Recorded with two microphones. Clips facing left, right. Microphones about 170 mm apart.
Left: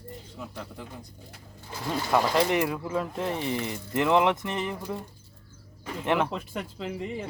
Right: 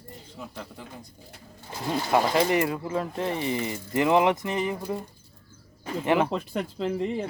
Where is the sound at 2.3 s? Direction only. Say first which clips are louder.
Right 1 dB; centre (ahead or behind).